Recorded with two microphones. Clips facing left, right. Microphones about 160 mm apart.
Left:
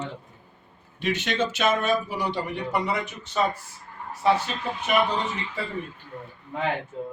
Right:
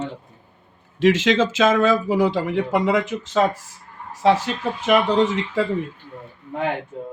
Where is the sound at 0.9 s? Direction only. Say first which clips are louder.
Right 9 dB; 90° right.